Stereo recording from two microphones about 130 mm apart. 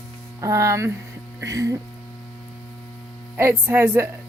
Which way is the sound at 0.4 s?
25° right (ahead or behind).